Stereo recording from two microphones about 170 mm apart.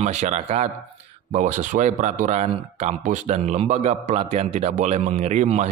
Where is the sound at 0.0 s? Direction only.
40° right (ahead or behind).